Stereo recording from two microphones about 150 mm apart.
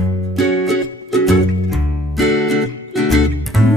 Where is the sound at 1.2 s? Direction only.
Centre (ahead or behind).